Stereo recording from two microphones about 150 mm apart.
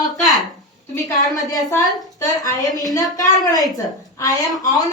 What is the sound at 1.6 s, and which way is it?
A woman's voice, 20° left (ahead or behind).